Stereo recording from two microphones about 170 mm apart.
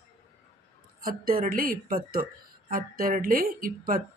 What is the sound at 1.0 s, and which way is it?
Speech, 55° right (ahead or behind).